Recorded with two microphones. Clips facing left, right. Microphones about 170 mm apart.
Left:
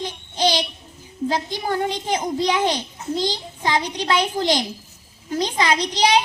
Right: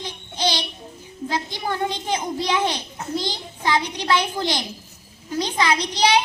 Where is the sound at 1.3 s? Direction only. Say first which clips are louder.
Left 2 dB; 45° left (ahead or behind).